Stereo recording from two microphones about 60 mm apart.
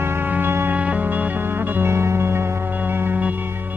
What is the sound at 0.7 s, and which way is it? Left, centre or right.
Music, right.